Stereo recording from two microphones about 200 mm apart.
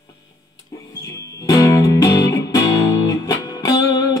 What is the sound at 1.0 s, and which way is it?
Music, 15° left (ahead or behind).